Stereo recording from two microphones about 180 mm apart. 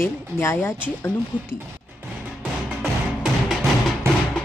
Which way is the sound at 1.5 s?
10° right (ahead or behind).